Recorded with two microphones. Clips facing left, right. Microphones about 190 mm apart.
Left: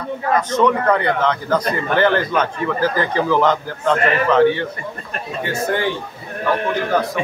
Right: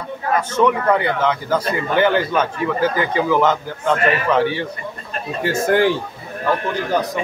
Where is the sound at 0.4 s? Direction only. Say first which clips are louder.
Even; 10° right (ahead or behind).